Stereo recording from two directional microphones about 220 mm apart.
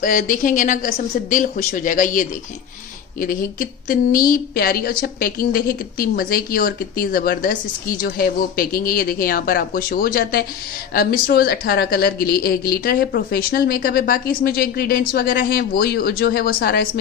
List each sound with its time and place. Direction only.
0.0 s a woman's voice: 35° left (ahead or behind)